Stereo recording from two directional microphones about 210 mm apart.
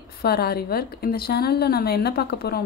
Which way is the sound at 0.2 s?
50° left (ahead or behind).